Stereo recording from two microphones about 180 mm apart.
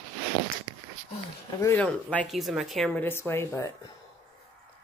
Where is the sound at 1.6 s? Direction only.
10° left (ahead or behind).